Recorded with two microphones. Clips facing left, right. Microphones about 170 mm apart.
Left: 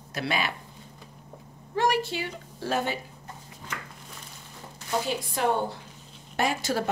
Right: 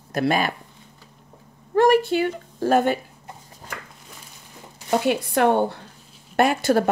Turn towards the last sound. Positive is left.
turn(degrees=-55)  # may be behind; listen again after turning